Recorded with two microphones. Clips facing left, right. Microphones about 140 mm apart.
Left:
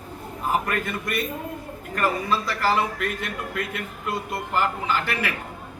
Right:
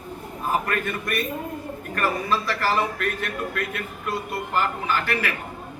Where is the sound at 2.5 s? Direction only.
15° left (ahead or behind).